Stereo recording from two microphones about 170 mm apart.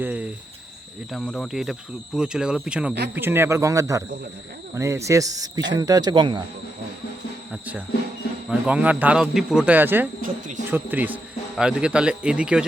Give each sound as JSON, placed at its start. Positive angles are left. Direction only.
{"t": 0.0, "sound": "speech", "side_deg": -10}
{"t": 7.5, "sound": "speech", "side_deg": -5}
{"t": 10.2, "sound": "speech", "side_deg": -55}
{"t": 10.7, "sound": "speech", "side_deg": -10}